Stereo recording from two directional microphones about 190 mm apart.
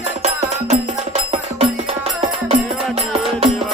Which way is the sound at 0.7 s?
35° right (ahead or behind).